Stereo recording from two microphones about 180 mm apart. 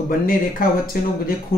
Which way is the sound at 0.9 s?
55° left (ahead or behind).